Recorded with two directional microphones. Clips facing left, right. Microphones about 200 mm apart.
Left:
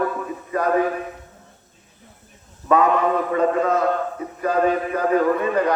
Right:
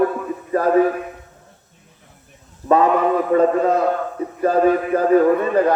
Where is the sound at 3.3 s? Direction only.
35° right (ahead or behind).